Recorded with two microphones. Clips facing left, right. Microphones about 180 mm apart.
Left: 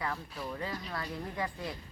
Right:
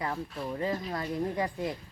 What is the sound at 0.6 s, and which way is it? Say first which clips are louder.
Speech: right 6 dB; 25° right (ahead or behind).